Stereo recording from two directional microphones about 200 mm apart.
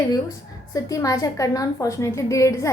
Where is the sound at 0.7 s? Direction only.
15° left (ahead or behind).